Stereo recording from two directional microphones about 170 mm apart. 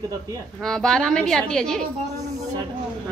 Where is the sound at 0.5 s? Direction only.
Centre (ahead or behind).